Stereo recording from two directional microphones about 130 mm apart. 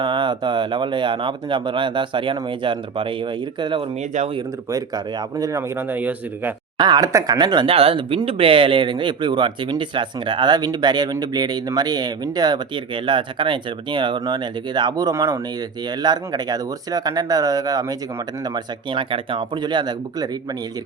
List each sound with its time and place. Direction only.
0.0 s speech: 40° right (ahead or behind); by 6.5 s 15° right (ahead or behind)
6.7 s speech: 30° right (ahead or behind)
7.7 s speech: 45° right (ahead or behind); by 20.6 s 30° right (ahead or behind)